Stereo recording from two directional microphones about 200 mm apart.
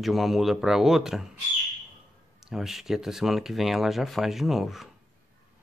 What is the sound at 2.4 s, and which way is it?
Speech, centre (ahead or behind).